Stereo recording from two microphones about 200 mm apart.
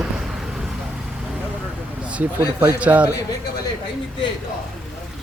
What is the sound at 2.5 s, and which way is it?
Speech, 5° right (ahead or behind).